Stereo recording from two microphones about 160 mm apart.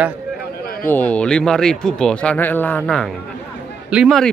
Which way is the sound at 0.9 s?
10° left (ahead or behind).